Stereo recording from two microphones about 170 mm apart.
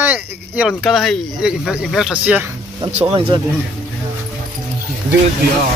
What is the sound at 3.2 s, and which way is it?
Speech, 30° right (ahead or behind).